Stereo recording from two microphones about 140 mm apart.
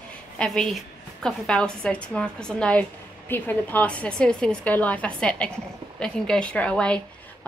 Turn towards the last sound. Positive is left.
turn(degrees=5)  # may be behind; listen again after turning